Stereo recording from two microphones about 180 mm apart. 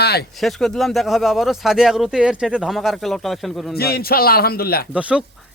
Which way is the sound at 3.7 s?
60° left (ahead or behind).